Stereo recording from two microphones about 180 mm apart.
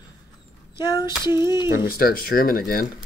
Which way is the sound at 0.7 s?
25° left (ahead or behind).